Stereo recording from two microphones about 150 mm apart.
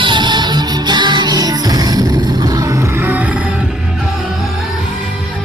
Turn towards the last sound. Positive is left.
turn(degrees=-10)  # may be behind; listen again after turning